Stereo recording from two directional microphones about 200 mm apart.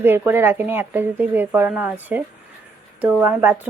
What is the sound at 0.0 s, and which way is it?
A woman's voice, 10° right (ahead or behind).